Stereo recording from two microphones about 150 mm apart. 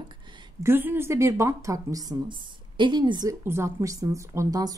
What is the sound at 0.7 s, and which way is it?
Speech, 15° right (ahead or behind).